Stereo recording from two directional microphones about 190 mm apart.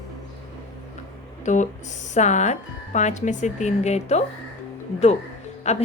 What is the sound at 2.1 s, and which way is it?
Speech, 40° left (ahead or behind).